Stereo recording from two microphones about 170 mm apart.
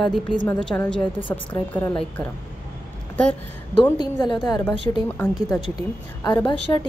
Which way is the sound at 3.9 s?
25° left (ahead or behind).